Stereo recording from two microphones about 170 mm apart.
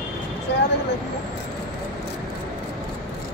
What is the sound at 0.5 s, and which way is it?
Vehicle, 90° left.